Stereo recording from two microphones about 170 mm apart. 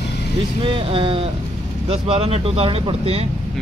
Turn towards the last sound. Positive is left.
turn(degrees=-35)  # may be behind; listen again after turning